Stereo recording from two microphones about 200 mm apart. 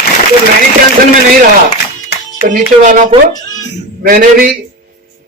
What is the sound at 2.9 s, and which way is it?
A man's voice, 40° right (ahead or behind).